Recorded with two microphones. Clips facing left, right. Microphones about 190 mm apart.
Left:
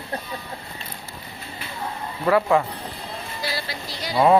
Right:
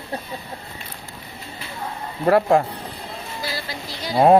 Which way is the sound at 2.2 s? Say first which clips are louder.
Right 3 dB; 45° right (ahead or behind).